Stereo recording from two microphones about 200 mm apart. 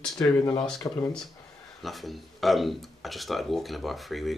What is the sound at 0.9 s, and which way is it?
Speech, 15° left (ahead or behind).